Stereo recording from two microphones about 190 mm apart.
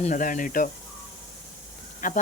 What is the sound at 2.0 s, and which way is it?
Speech, 45° left (ahead or behind).